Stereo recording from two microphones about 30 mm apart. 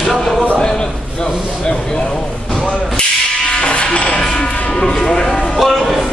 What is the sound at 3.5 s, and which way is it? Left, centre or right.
Music, left.